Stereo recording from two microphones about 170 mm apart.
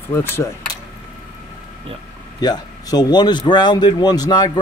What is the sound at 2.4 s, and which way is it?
A man's voice, 25° left (ahead or behind).